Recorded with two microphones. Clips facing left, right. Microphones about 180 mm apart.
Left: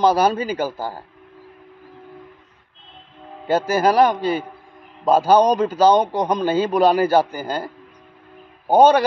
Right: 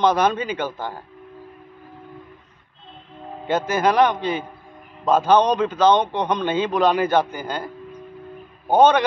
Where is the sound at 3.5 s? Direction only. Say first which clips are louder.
Left 2 dB; 35° left (ahead or behind).